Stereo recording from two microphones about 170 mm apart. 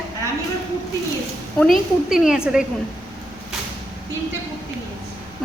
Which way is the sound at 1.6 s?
Centre (ahead or behind).